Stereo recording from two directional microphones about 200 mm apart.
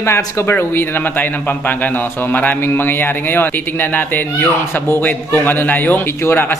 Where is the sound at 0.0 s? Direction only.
15° left (ahead or behind).